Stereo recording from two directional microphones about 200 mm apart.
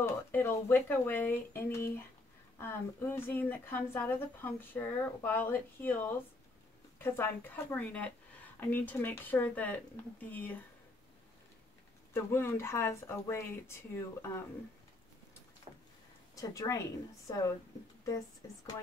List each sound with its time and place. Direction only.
0.0 s speech: 10° left (ahead or behind)
12.1 s speech: 10° left (ahead or behind)
15.7 s vehicle: 30° right (ahead or behind)
16.3 s speech: 15° left (ahead or behind)